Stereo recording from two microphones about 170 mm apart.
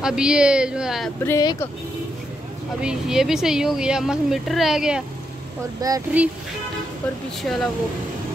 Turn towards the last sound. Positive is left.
turn(degrees=0)  # may be behind; listen again after turning